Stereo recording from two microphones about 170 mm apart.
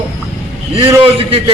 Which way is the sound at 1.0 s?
30° right (ahead or behind).